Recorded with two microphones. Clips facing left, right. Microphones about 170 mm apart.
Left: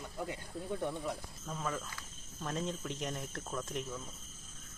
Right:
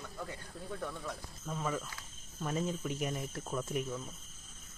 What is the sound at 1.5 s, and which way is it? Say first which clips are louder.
Speech: right 2 dB; 5° right (ahead or behind).